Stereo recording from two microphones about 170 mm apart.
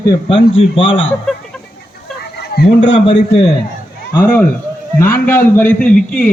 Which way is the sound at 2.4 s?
70° left (ahead or behind).